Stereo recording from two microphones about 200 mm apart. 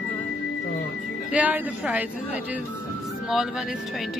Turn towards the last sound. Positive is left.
turn(degrees=0)  # may be behind; listen again after turning